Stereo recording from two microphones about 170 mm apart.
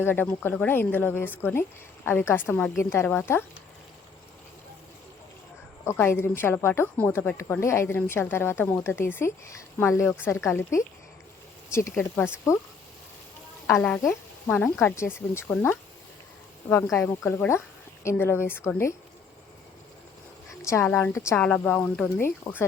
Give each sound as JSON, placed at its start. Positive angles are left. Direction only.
{"t": 0.0, "sound": "a woman's voice", "side_deg": 10}
{"t": 5.8, "sound": "a woman's voice", "side_deg": 15}
{"t": 13.7, "sound": "a woman's voice", "side_deg": 15}
{"t": 16.9, "sound": "a woman's voice", "side_deg": 15}
{"t": 20.5, "sound": "a woman's voice", "side_deg": 15}